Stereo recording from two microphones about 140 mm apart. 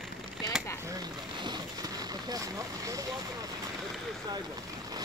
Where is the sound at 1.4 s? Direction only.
30° right (ahead or behind).